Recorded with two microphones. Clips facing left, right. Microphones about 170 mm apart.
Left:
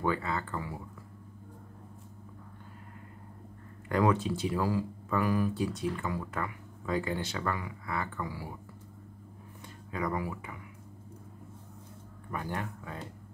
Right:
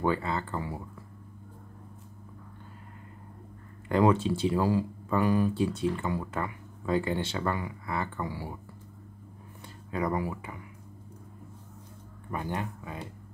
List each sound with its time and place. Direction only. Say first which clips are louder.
0.0 s speech: right 3 dB; 30° right (ahead or behind)
3.9 s speech: right 4 dB; 25° right (ahead or behind)
9.9 s speech: right 3 dB; 30° right (ahead or behind)
12.3 s speech: right 3 dB; 20° right (ahead or behind)